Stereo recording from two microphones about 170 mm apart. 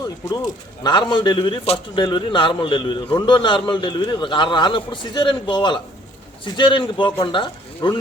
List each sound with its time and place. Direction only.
0.0 s a man's voice: 25° left (ahead or behind)